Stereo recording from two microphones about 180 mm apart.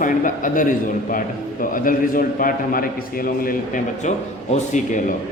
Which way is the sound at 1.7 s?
50° left (ahead or behind).